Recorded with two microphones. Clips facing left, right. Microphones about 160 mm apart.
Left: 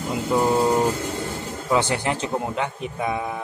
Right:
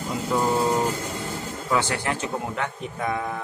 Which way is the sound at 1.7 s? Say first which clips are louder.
Left 3 dB; 20° left (ahead or behind).